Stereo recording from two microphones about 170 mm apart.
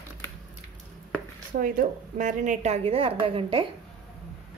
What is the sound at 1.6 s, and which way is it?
A woman's voice, 50° right (ahead or behind).